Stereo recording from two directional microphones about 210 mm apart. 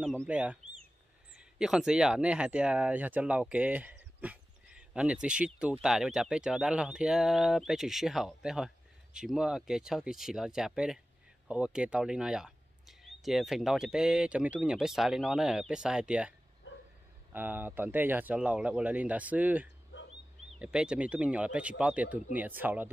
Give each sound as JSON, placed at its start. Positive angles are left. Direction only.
{"t": 0.2, "sound": "speech", "side_deg": -5}
{"t": 19.9, "sound": "bird", "side_deg": 60}
{"t": 20.5, "sound": "speech", "side_deg": -5}